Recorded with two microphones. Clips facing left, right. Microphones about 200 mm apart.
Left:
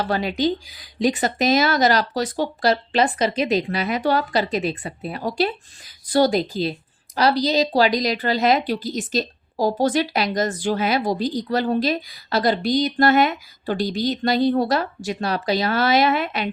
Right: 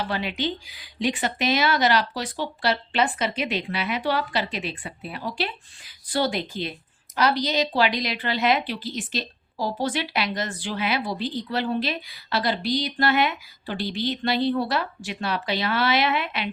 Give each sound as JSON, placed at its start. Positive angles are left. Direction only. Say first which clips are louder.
{"t": 0.0, "sound": "a woman's voice", "louder": "left 6 dB", "side_deg": 40}